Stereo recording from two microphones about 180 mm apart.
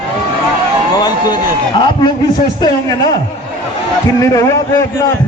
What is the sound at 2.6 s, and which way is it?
Speech, 20° left (ahead or behind).